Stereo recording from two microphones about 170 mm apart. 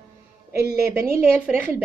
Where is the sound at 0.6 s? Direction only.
70° right (ahead or behind).